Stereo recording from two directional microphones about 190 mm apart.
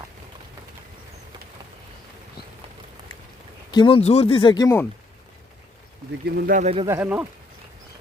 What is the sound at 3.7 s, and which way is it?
Speech, 25° left (ahead or behind).